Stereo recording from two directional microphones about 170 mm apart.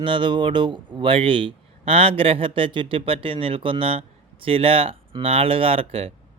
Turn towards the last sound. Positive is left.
turn(degrees=-35)  # may be behind; listen again after turning